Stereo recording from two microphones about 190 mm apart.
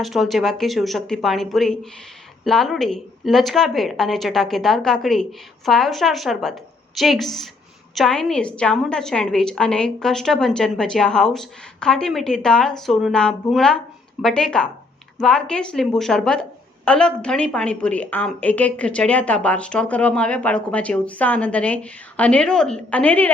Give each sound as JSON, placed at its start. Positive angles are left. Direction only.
{"t": 0.0, "sound": "a woman's voice", "side_deg": 0}